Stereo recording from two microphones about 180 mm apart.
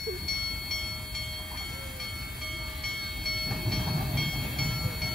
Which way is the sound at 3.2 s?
Centre (ahead or behind).